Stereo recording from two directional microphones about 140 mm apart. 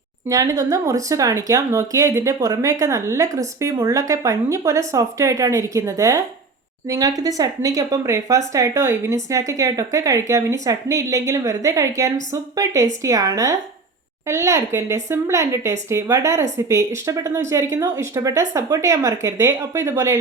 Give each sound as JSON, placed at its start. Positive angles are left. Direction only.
{"t": 0.3, "sound": "speech", "side_deg": -25}